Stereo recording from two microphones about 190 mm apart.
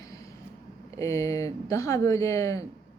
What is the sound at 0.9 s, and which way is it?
Speech, 15° left (ahead or behind).